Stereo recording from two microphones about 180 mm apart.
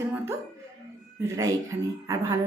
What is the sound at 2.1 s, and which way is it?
Speech, 15° right (ahead or behind).